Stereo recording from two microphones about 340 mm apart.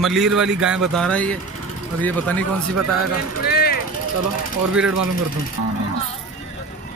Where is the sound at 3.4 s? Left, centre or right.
Left.